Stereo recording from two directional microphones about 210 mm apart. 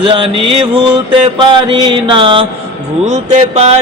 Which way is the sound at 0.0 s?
25° right (ahead or behind).